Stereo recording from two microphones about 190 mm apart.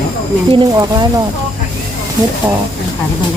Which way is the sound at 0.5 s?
20° right (ahead or behind).